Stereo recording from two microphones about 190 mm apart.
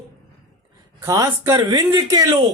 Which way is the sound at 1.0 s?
15° right (ahead or behind).